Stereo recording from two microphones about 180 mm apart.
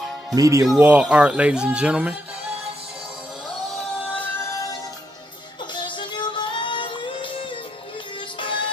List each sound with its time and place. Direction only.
0.3 s speech: 20° right (ahead or behind)
0.7 s speech: 5° right (ahead or behind)
4.1 s music: 15° left (ahead or behind)
5.8 s music: 25° left (ahead or behind)